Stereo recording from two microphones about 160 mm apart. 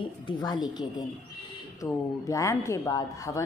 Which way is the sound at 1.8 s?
20° left (ahead or behind).